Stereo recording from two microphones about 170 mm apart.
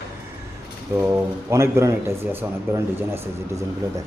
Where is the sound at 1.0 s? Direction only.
15° right (ahead or behind).